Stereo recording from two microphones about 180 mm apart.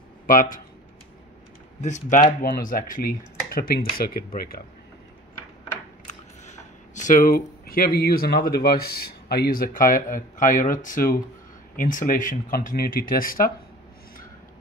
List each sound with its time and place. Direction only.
0.3 s speech: 50° left (ahead or behind)
1.8 s speech: 40° left (ahead or behind)
6.4 s speech: 40° left (ahead or behind)